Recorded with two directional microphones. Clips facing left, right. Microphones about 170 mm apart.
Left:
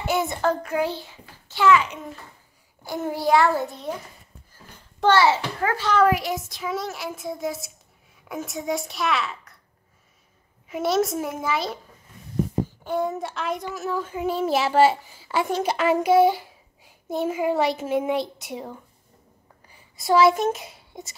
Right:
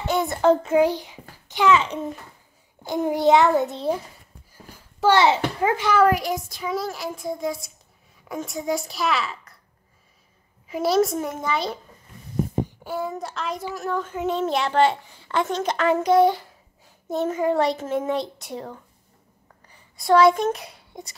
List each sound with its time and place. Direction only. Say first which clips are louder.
0.0 s child singing: right 1 dB; 5° left (ahead or behind)
0.4 s a child's voice: right 6 dB; 25° right (ahead or behind)
5.1 s a child's voice: right 1 dB; 20° right (ahead or behind)
5.9 s a child's voice: left 1 dB; centre (ahead or behind)
10.7 s a child's voice: right 2 dB; centre (ahead or behind)
12.8 s a child's voice: left 3 dB; 5° right (ahead or behind)
20.0 s a child's voice: right 2 dB; 5° left (ahead or behind)